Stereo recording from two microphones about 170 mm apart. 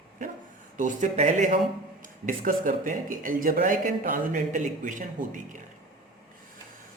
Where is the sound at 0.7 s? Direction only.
45° right (ahead or behind).